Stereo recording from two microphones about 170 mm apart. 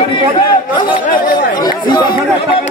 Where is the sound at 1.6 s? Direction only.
25° left (ahead or behind).